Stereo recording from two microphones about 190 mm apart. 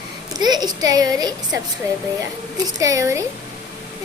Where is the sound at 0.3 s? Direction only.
20° right (ahead or behind).